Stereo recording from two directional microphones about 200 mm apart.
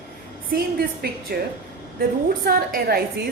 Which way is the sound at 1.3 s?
50° right (ahead or behind).